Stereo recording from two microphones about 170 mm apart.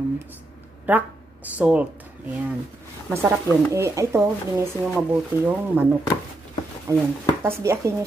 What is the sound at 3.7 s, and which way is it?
Speech, 15° right (ahead or behind).